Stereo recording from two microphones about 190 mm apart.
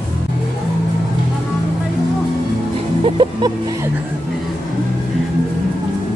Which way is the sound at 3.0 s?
25° right (ahead or behind).